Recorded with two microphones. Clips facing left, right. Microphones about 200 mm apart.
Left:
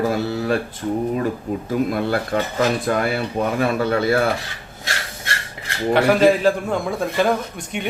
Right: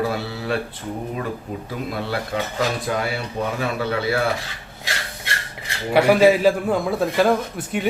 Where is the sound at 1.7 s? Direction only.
50° left (ahead or behind).